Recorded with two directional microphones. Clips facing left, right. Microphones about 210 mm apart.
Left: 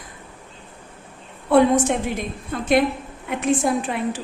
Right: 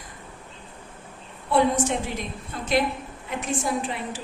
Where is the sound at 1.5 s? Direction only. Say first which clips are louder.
Left 6 dB; 55° left (ahead or behind).